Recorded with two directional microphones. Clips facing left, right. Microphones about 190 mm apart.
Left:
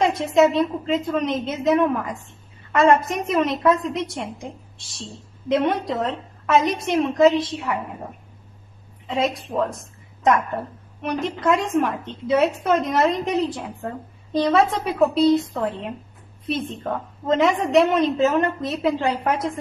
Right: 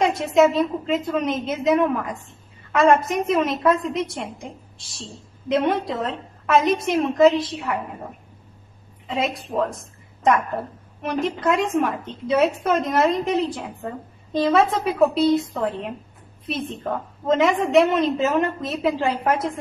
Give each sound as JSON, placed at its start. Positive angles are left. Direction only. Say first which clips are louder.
{"t": 0.0, "sound": "a woman's voice", "louder": "even", "side_deg": 0}
{"t": 9.0, "sound": "a woman's voice", "louder": "left 2 dB", "side_deg": 0}